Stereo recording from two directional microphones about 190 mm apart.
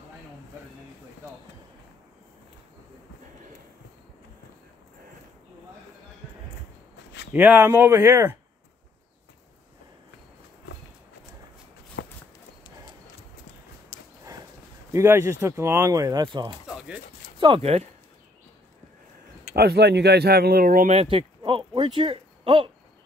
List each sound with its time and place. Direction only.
7.3 s speech: 10° right (ahead or behind)
12.0 s walk: 65° left (ahead or behind)
13.9 s horse: 60° left (ahead or behind)
14.9 s speech: 15° right (ahead or behind)
16.6 s a sound: 5° right (ahead or behind)
17.4 s speech: 30° right (ahead or behind)
19.5 s speech: 55° right (ahead or behind); by 21.3 s 30° right (ahead or behind)
21.4 s a sound: 25° right (ahead or behind)